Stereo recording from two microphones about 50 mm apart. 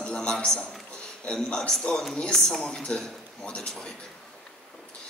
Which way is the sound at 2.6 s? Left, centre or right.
Centre.